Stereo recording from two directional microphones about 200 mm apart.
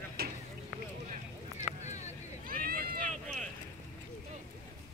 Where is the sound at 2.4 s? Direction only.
45° right (ahead or behind).